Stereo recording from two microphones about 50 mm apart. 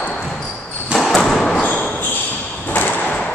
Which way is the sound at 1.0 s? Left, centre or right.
Centre.